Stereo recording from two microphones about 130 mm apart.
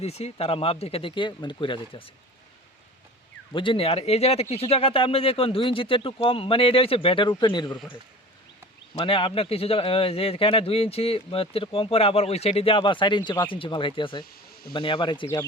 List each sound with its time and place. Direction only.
0.0 s speech: 55° left (ahead or behind)
3.5 s speech: 40° left (ahead or behind)
9.0 s speech: 45° left (ahead or behind)